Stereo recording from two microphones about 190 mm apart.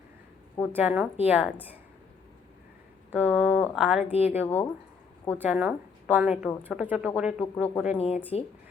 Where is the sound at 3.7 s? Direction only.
5° right (ahead or behind).